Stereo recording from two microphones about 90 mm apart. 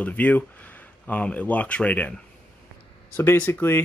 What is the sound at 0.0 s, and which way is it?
Speech, 20° left (ahead or behind).